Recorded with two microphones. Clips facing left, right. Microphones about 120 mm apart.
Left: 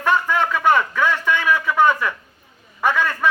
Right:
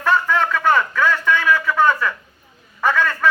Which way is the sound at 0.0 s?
15° left (ahead or behind).